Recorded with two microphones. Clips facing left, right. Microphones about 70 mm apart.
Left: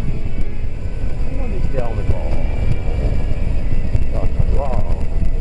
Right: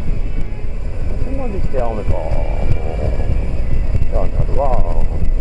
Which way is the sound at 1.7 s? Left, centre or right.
Right.